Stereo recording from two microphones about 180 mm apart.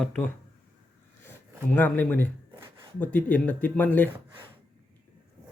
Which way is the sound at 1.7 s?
10° left (ahead or behind).